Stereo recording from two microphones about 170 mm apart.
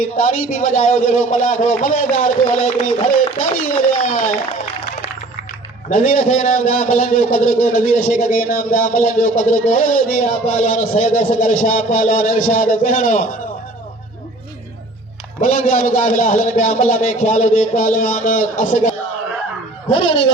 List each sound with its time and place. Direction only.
0.0 s a man's voice: 50° left (ahead or behind)
5.9 s a man's voice: 50° left (ahead or behind)
15.4 s a man's voice: 55° left (ahead or behind)
19.9 s a sound: 30° left (ahead or behind)